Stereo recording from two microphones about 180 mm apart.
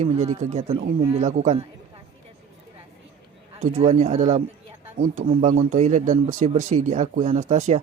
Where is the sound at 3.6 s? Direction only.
35° right (ahead or behind).